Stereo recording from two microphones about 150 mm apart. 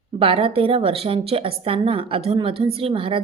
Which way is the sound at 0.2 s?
40° right (ahead or behind).